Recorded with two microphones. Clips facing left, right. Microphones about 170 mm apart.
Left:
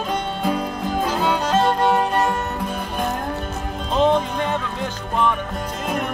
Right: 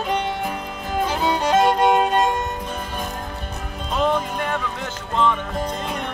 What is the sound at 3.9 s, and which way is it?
Music, 25° left (ahead or behind).